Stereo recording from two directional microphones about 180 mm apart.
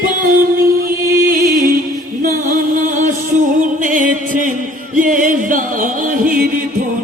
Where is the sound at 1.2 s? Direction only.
55° right (ahead or behind).